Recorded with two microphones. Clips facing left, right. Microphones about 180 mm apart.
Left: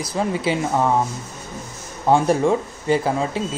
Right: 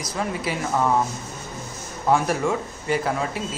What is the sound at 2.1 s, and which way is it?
Speech, 30° left (ahead or behind).